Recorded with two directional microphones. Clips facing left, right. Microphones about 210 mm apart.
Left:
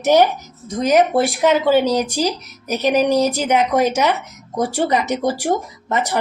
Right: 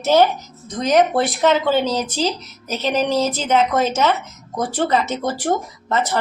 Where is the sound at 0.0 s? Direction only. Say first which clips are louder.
Left 1 dB; 15° left (ahead or behind).